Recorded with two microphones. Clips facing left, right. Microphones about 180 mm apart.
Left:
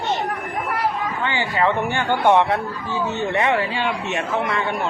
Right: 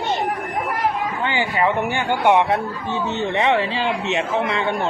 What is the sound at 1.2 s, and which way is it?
Speech, 20° right (ahead or behind).